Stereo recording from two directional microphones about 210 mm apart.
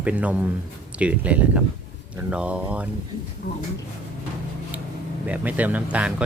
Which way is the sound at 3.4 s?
50° left (ahead or behind).